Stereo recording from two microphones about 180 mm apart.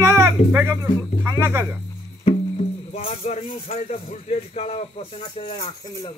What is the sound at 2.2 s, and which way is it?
Music, 35° left (ahead or behind).